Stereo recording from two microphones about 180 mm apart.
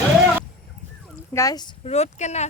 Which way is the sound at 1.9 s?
40° left (ahead or behind).